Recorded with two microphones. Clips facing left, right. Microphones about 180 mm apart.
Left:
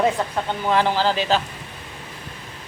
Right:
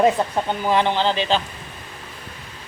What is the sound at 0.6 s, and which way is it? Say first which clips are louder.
Speech: even; centre (ahead or behind).